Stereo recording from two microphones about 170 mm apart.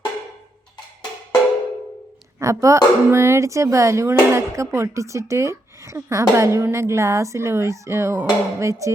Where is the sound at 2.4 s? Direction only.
20° right (ahead or behind).